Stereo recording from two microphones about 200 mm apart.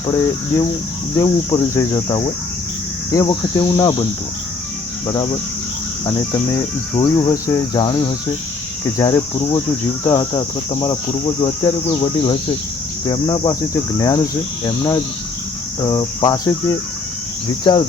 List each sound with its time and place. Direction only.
1.1 s speech: 20° left (ahead or behind)
5.0 s speech: 20° left (ahead or behind)
15.8 s speech: 20° left (ahead or behind)